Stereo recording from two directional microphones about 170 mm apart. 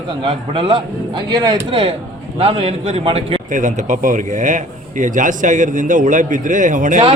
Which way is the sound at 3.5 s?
45° right (ahead or behind).